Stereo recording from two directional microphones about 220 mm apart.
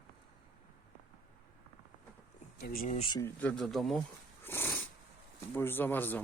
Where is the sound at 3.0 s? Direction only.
15° left (ahead or behind); by 4.0 s centre (ahead or behind).